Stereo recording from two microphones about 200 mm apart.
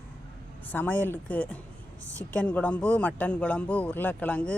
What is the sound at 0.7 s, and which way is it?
Speech, 10° left (ahead or behind).